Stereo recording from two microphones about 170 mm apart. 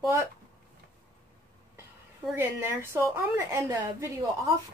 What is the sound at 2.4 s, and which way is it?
A woman's voice, 15° right (ahead or behind).